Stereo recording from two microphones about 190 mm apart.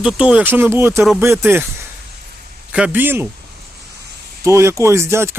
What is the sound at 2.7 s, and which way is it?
Speech, 5° right (ahead or behind).